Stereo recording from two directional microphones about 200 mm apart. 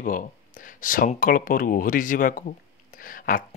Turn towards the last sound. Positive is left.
turn(degrees=45)  # may be behind; listen again after turning